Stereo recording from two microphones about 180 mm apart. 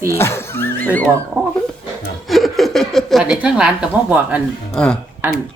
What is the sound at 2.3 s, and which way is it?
Speech, centre (ahead or behind).